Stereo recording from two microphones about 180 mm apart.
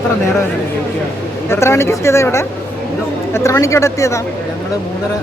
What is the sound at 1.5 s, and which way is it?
Speech, 15° left (ahead or behind).